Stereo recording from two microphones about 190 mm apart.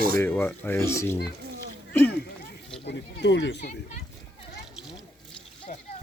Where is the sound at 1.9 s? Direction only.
5° left (ahead or behind).